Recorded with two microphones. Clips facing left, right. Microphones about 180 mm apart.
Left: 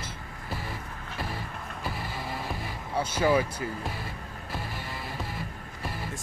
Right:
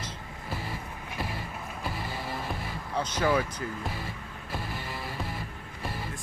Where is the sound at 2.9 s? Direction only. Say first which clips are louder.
Left 2 dB; 10° left (ahead or behind).